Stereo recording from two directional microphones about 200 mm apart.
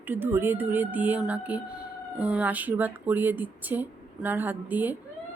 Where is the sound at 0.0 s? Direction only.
10° right (ahead or behind).